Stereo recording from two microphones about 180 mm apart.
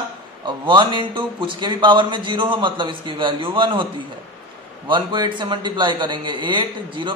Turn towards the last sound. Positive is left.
turn(degrees=-25)  # may be behind; listen again after turning